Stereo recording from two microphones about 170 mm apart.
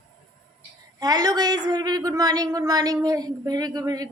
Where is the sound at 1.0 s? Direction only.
20° right (ahead or behind).